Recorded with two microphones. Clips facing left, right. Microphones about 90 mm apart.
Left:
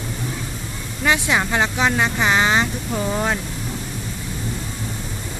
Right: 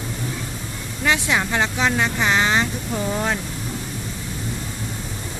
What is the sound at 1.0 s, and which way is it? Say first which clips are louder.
Speech: left 1 dB; 15° left (ahead or behind).